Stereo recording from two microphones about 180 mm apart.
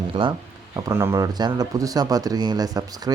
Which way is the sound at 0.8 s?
15° right (ahead or behind).